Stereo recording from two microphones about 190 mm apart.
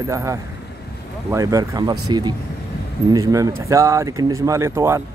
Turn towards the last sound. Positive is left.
turn(degrees=-15)  # may be behind; listen again after turning